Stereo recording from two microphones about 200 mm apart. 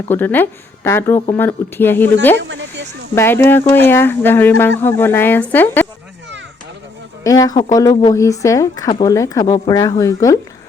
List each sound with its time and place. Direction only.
0.1 s speech: 10° left (ahead or behind)
2.4 s a sound: 65° right (ahead or behind)
3.2 s speech: 10° left (ahead or behind)
7.3 s speech: 15° left (ahead or behind)